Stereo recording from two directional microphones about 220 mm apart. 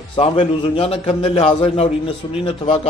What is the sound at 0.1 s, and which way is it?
A man's voice, 25° left (ahead or behind).